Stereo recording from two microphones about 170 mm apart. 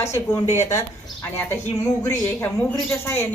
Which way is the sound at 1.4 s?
15° left (ahead or behind).